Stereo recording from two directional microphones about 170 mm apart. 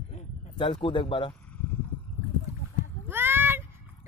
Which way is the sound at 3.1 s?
10° right (ahead or behind).